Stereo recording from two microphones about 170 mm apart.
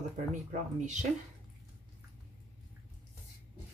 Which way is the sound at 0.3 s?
45° right (ahead or behind).